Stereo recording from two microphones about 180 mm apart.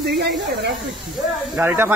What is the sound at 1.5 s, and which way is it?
Speech, 10° right (ahead or behind).